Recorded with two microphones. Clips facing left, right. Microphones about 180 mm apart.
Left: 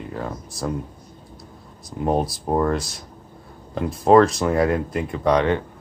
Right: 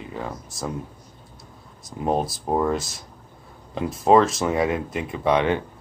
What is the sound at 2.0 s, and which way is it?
Speech, centre (ahead or behind).